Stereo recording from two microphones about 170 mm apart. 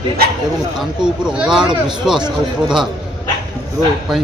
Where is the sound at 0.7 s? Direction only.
5° right (ahead or behind).